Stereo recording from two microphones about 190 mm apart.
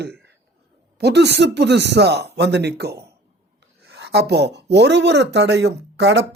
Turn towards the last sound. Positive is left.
turn(degrees=-65)  # may be behind; listen again after turning